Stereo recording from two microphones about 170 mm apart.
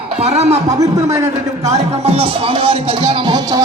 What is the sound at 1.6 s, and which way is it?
Speech, 40° right (ahead or behind).